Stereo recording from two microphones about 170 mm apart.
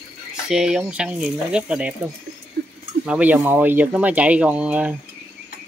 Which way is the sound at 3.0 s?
10° right (ahead or behind).